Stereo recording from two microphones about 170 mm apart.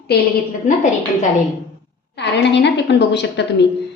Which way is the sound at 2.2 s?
90° left.